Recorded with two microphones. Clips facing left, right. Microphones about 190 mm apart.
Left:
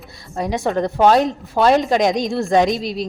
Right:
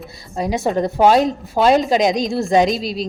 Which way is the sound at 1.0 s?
10° right (ahead or behind).